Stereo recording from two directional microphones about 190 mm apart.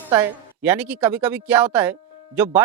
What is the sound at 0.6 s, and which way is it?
Speech, 5° right (ahead or behind).